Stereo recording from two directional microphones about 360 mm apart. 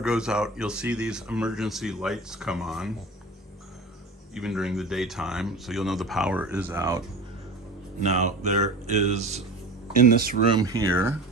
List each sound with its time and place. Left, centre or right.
0.0 s speech: centre
4.4 s speech: centre
8.0 s speech: centre
10.5 s speech: centre